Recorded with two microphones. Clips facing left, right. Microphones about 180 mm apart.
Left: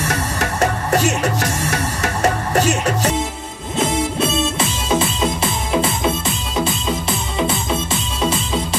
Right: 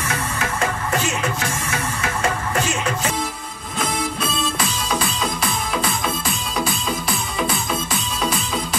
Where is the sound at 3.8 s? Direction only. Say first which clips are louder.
Left 5 dB; 25° left (ahead or behind).